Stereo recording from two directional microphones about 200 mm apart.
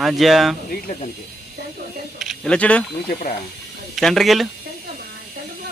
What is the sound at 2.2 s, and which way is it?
Speech, centre (ahead or behind).